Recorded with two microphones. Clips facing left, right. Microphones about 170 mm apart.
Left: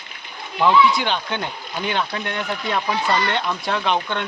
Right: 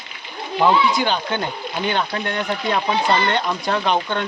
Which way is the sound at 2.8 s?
25° right (ahead or behind).